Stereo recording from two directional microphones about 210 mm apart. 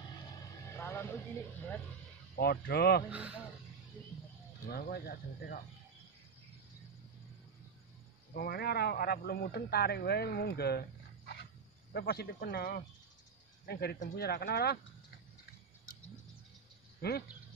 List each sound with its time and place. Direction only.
0.7 s a sound: 10° left (ahead or behind)
2.3 s speech: 50° left (ahead or behind)
3.1 s a man's voice: 5° right (ahead or behind)
4.6 s speech: 45° left (ahead or behind)
8.3 s speech: 50° left (ahead or behind)
17.0 s speech: 45° left (ahead or behind)